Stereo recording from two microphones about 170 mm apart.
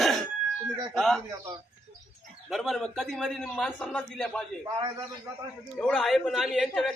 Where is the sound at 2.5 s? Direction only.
Centre (ahead or behind).